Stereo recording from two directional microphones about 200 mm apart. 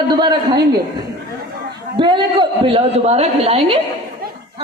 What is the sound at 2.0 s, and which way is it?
A woman's voice, 25° right (ahead or behind).